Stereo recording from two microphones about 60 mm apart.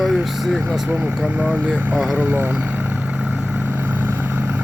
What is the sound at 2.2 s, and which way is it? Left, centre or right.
Speech, right.